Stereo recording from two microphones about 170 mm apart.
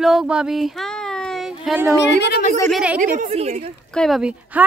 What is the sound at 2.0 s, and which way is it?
Speech, 85° left.